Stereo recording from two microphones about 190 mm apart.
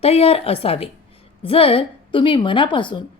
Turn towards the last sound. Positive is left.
turn(degrees=25)  # may be behind; listen again after turning